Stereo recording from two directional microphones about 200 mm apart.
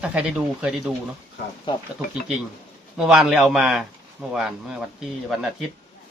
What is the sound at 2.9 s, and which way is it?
Speech, 5° right (ahead or behind).